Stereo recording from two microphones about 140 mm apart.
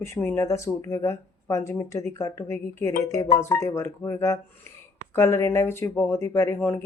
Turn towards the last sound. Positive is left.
turn(degrees=20)  # may be behind; listen again after turning